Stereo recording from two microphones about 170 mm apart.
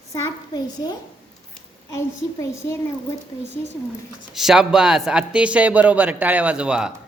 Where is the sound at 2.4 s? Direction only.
15° left (ahead or behind).